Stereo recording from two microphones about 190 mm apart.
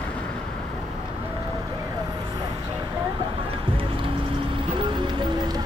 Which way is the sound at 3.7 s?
30° right (ahead or behind).